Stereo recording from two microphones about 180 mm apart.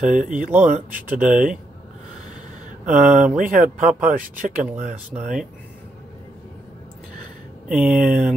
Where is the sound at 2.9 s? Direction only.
45° right (ahead or behind).